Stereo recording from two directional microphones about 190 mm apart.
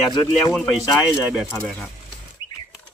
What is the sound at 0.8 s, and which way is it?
Speech, centre (ahead or behind).